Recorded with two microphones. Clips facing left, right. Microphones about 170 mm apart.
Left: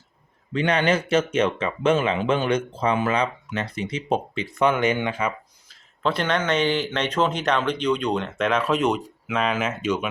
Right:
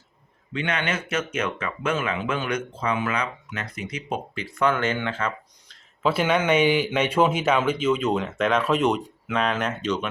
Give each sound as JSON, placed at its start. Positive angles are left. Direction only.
{"t": 0.5, "sound": "speech", "side_deg": 35}
{"t": 5.6, "sound": "speech", "side_deg": 0}